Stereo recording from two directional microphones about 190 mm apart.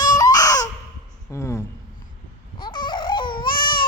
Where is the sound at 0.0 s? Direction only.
20° left (ahead or behind).